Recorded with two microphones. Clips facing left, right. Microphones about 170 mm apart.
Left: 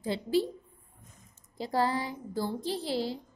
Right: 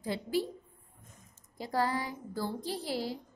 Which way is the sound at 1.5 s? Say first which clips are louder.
Left 3 dB; 30° left (ahead or behind).